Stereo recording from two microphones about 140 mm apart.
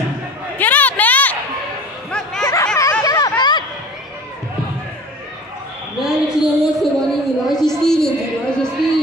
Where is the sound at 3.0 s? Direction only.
25° left (ahead or behind).